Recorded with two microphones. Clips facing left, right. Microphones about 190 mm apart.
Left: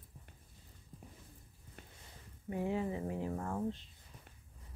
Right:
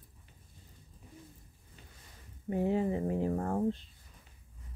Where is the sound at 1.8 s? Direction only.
55° left (ahead or behind).